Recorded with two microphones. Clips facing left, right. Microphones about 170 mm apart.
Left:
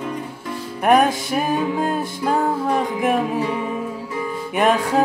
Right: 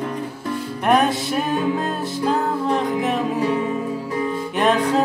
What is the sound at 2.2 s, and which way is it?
Music, 10° left (ahead or behind).